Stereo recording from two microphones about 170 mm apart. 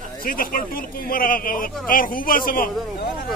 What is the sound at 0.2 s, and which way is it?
Speech, 55° left (ahead or behind).